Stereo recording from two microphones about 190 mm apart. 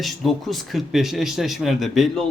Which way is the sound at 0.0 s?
Centre (ahead or behind).